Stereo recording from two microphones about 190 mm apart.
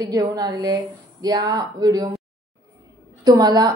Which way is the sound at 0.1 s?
20° right (ahead or behind).